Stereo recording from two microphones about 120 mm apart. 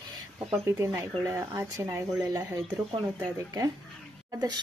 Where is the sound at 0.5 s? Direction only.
20° right (ahead or behind).